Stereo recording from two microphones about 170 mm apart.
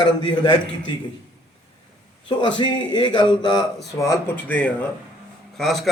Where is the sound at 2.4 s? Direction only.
25° left (ahead or behind).